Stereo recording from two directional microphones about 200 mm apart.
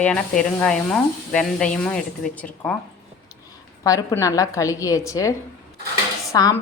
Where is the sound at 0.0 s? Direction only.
5° left (ahead or behind).